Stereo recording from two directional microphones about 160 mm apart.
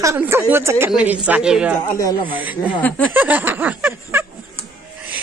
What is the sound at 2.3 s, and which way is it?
Speech, 10° right (ahead or behind).